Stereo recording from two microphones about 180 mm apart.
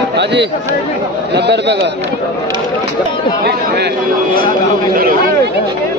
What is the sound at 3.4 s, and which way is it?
Speech, 65° right (ahead or behind).